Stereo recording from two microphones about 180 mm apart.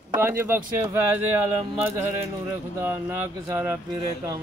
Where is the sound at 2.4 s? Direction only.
10° right (ahead or behind).